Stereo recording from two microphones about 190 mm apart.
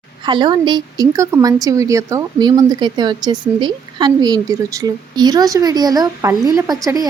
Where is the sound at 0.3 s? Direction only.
25° right (ahead or behind).